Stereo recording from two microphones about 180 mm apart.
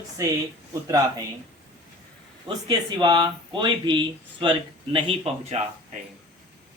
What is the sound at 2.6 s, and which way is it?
Speech, 25° right (ahead or behind).